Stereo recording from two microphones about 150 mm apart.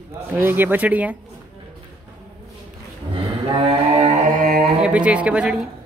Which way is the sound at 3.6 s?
40° right (ahead or behind).